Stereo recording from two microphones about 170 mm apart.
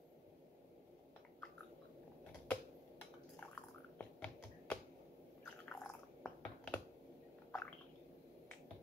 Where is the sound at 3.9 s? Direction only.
5° left (ahead or behind).